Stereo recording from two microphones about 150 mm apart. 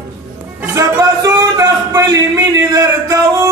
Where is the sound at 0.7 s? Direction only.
20° right (ahead or behind).